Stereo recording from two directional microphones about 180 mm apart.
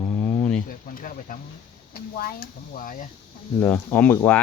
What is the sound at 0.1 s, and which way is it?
Insect, 20° left (ahead or behind).